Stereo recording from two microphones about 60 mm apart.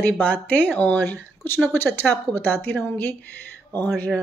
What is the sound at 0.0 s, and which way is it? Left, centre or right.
A woman's voice, left.